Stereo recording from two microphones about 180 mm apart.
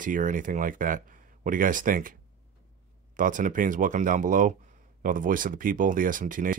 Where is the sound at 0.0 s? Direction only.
45° right (ahead or behind).